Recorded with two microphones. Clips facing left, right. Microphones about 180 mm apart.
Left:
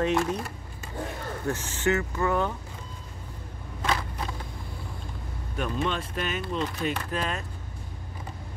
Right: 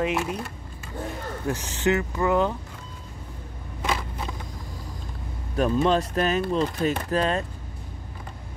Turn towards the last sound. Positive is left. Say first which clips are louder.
# right 7 dB
turn(degrees=-35)  # may be behind; listen again after turning